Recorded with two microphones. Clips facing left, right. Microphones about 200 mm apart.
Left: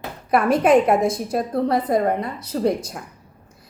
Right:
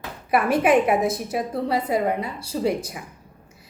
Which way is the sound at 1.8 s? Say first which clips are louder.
Left 3 dB; 10° right (ahead or behind).